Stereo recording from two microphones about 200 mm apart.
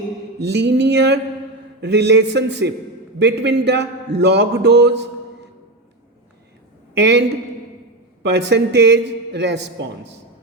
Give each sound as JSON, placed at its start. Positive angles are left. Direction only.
{"t": 0.3, "sound": "a man's voice", "side_deg": -55}
{"t": 7.0, "sound": "a man's voice", "side_deg": -60}